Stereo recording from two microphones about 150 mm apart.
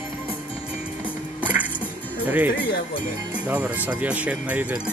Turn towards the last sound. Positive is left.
turn(degrees=-10)  # may be behind; listen again after turning